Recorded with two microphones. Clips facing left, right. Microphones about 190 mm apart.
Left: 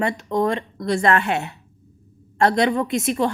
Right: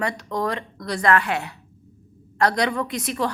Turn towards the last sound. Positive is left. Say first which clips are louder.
# left 5 dB
turn(degrees=25)  # may be behind; listen again after turning